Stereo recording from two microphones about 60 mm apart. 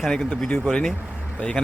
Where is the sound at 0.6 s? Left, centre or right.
Centre.